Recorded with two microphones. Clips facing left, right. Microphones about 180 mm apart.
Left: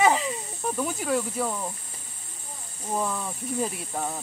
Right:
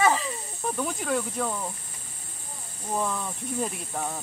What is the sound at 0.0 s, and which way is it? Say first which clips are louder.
Snake: left 2 dB; 15° left (ahead or behind).